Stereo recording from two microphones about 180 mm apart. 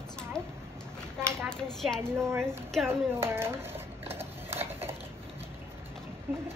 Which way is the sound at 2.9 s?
15° right (ahead or behind).